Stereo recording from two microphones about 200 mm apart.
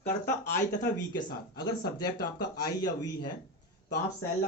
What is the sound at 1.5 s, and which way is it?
Speech, 20° left (ahead or behind).